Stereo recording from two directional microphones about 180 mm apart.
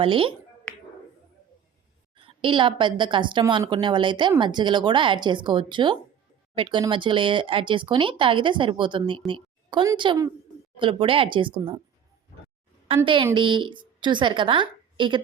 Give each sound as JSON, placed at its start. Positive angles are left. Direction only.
{"t": 0.0, "sound": "speech", "side_deg": -30}
{"t": 2.1, "sound": "a woman's voice", "side_deg": -30}
{"t": 13.3, "sound": "a woman's voice", "side_deg": -25}